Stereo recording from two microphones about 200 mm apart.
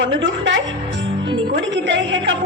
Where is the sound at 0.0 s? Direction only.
65° right (ahead or behind).